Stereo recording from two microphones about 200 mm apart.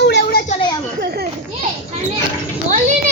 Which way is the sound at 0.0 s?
60° left (ahead or behind).